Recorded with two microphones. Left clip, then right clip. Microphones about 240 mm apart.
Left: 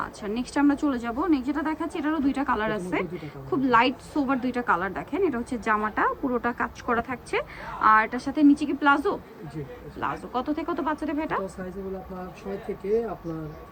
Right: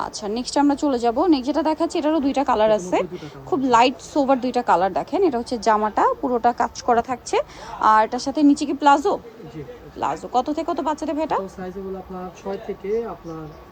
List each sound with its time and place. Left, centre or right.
0.0 s a woman's voice: centre
12.8 s speech: centre